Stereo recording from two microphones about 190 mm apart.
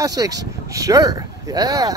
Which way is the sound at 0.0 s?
20° right (ahead or behind).